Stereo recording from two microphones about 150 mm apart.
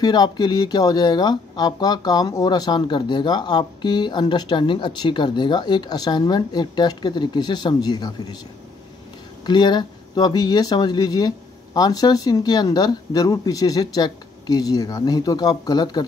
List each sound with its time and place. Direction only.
0.0 s speech: 30° left (ahead or behind)
9.5 s speech: 30° left (ahead or behind)